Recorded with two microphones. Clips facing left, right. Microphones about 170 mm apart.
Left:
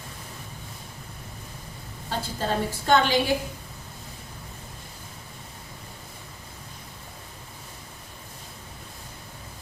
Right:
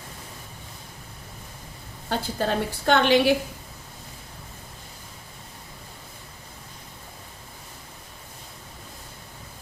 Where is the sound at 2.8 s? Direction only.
65° right (ahead or behind).